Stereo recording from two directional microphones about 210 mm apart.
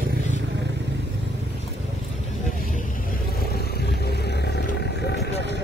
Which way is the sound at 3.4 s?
50° left (ahead or behind).